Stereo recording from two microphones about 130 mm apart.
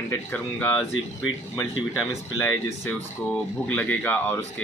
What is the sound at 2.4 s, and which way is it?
Speech, 20° left (ahead or behind).